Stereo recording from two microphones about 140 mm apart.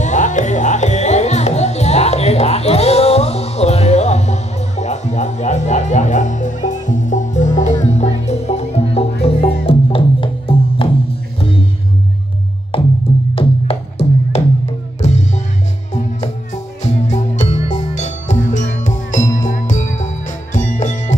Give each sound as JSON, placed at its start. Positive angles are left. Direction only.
{"t": 0.0, "sound": "music", "side_deg": 60}
{"t": 12.7, "sound": "music", "side_deg": 40}